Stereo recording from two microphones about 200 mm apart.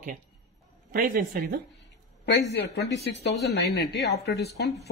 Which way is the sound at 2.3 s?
55° left (ahead or behind).